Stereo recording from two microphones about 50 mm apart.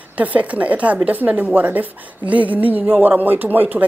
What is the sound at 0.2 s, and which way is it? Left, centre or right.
A woman's voice, right.